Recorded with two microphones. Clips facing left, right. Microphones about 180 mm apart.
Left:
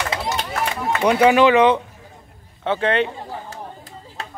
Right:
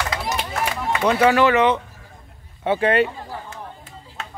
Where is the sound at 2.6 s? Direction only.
10° right (ahead or behind).